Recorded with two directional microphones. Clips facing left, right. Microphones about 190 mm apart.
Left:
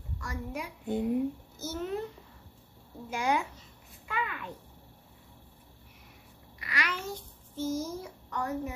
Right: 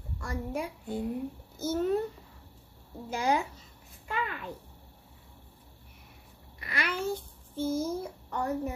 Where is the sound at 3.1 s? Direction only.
35° right (ahead or behind).